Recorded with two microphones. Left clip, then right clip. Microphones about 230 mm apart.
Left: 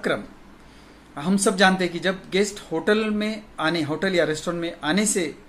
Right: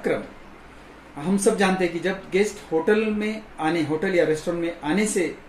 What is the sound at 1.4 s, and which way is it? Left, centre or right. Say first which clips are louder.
Speech: left 2 dB; centre.